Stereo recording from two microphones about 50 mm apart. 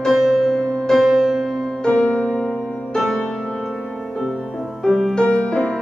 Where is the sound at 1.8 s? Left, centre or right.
Left.